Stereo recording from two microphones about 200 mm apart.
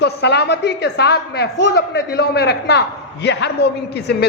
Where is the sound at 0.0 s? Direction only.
55° left (ahead or behind).